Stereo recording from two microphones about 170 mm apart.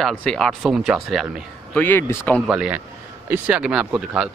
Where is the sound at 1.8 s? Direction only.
15° left (ahead or behind).